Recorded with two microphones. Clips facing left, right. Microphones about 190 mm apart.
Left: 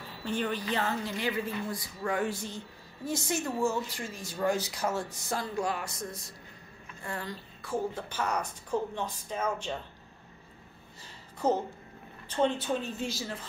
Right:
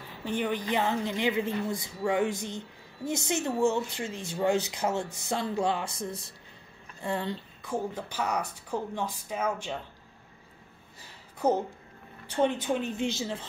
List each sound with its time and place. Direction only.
0.2 s speech: 15° right (ahead or behind)
7.9 s a woman's voice: 15° right (ahead or behind)
11.3 s a woman's voice: 15° right (ahead or behind)